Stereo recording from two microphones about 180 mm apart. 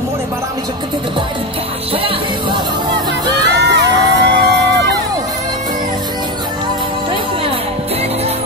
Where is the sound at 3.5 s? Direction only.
75° right (ahead or behind).